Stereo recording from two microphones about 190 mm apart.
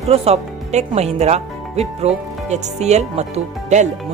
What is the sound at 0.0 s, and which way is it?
Speech, 30° right (ahead or behind).